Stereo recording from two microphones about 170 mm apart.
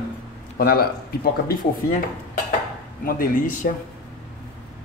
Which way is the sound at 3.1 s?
55° left (ahead or behind).